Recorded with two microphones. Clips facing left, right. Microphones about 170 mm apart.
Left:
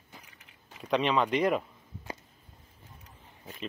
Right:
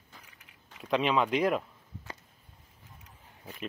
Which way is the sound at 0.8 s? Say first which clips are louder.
Even; centre (ahead or behind).